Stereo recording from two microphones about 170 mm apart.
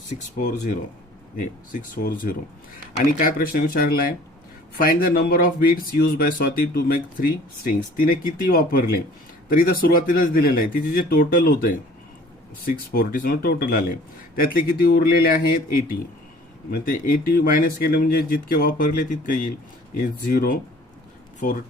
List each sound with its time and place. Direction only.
0.3 s speech: 50° left (ahead or behind)